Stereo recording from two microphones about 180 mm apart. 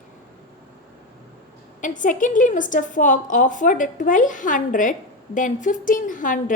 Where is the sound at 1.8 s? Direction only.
45° left (ahead or behind).